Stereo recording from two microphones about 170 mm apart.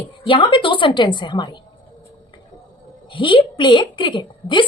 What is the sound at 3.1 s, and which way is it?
A woman's voice, 30° left (ahead or behind).